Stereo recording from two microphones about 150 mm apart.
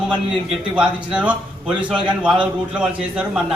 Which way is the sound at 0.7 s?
5° right (ahead or behind).